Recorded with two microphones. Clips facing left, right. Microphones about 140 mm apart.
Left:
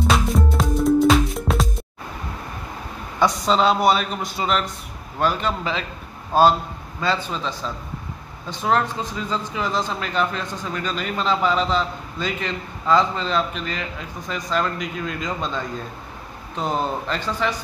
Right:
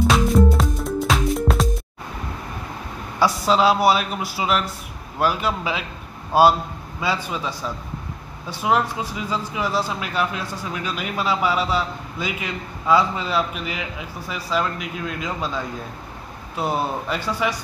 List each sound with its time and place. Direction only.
0.0 s music: centre (ahead or behind)
3.2 s a man's voice: 5° right (ahead or behind)